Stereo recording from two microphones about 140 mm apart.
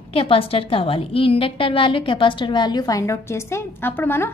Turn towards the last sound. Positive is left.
turn(degrees=15)  # may be behind; listen again after turning